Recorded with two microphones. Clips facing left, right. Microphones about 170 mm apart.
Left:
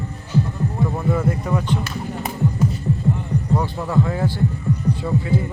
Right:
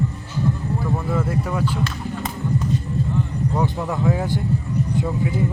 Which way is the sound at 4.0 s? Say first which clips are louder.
Left 1 dB; 5° right (ahead or behind).